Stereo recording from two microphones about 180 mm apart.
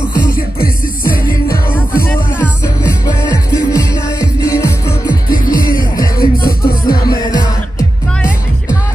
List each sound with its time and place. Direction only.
0.3 s music: 55° left (ahead or behind)
1.7 s music: 10° left (ahead or behind)
3.7 s music: 20° left (ahead or behind)
5.4 s music: 55° left (ahead or behind)
7.0 s music: 20° left (ahead or behind)